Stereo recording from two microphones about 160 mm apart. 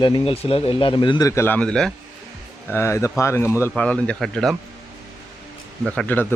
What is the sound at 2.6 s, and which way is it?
A man's voice, 15° left (ahead or behind).